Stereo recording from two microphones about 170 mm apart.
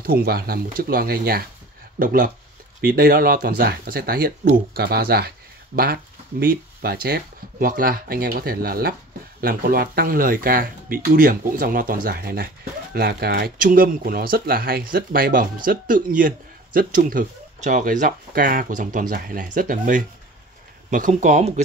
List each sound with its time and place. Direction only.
0.0 s speech: 60° right (ahead or behind); by 21.5 s 45° right (ahead or behind)